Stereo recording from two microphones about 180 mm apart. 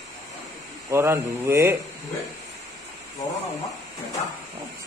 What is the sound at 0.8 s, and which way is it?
Speech, 15° right (ahead or behind).